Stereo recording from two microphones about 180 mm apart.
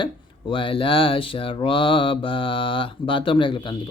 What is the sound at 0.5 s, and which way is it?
Mantra, 30° left (ahead or behind).